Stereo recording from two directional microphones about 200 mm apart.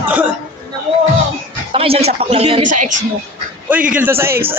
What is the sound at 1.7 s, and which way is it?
Speech, 30° right (ahead or behind).